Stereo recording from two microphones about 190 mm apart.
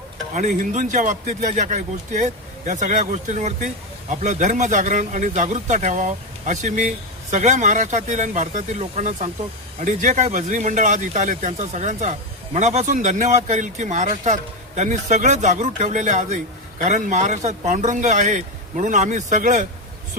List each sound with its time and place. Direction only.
0.3 s a man's voice: 40° right (ahead or behind)